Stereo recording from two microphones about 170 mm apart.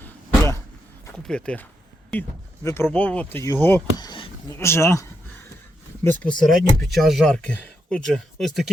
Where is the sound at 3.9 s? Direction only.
25° left (ahead or behind).